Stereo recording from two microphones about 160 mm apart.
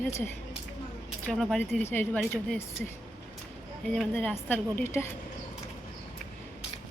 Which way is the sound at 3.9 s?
5° left (ahead or behind).